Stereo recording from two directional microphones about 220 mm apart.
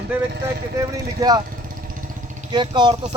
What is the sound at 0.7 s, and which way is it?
Speech, 15° right (ahead or behind).